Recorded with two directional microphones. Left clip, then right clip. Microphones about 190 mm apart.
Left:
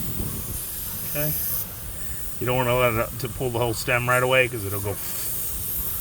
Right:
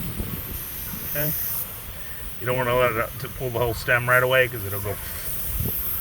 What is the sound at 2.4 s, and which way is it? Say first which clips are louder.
Speech: even; 60° left (ahead or behind).